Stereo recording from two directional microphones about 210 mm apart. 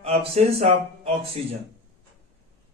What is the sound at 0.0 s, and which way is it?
A man's voice, 30° right (ahead or behind).